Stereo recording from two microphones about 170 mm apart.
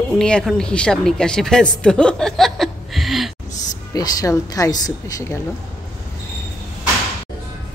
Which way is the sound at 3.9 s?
20° left (ahead or behind).